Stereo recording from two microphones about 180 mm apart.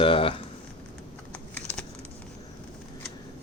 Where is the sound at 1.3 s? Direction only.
10° left (ahead or behind).